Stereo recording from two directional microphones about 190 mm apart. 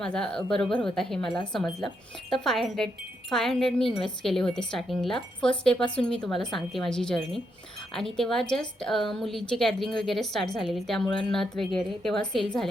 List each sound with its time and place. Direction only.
0.0 s speech: 5° left (ahead or behind)